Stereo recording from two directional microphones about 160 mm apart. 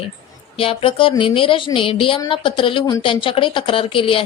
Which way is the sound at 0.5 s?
35° left (ahead or behind).